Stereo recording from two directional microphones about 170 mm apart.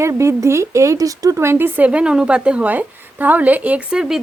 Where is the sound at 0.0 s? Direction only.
15° right (ahead or behind).